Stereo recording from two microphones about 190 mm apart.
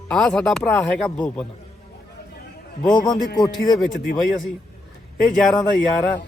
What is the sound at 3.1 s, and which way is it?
Speech, 20° left (ahead or behind).